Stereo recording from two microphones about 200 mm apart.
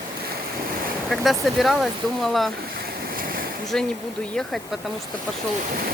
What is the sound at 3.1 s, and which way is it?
Ocean, 45° right (ahead or behind).